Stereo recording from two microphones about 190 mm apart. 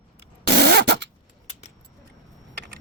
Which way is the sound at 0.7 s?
65° right (ahead or behind).